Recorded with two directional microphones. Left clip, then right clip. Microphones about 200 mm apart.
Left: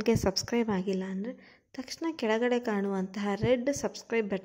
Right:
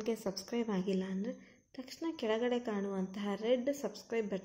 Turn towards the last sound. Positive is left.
turn(degrees=20)  # may be behind; listen again after turning